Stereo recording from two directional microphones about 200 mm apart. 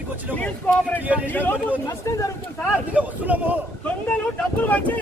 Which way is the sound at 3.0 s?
5° right (ahead or behind).